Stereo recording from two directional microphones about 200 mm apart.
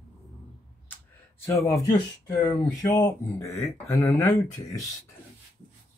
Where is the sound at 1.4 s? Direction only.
15° left (ahead or behind).